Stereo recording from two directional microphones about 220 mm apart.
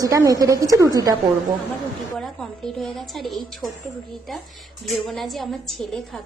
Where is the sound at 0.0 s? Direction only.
15° right (ahead or behind).